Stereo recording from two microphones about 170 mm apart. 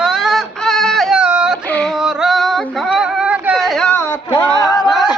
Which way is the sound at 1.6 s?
5° left (ahead or behind).